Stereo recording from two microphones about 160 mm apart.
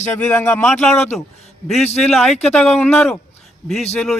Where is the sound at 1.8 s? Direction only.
40° left (ahead or behind).